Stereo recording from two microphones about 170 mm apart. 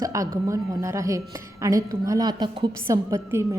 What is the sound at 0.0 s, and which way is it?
A woman's voice, 20° right (ahead or behind).